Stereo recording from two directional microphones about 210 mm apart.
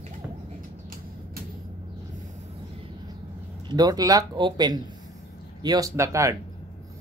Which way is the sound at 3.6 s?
20° right (ahead or behind).